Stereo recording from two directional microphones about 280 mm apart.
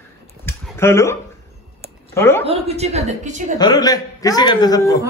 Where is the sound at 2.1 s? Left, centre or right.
Centre.